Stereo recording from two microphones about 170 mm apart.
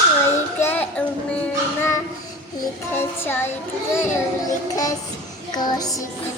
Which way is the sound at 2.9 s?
15° left (ahead or behind).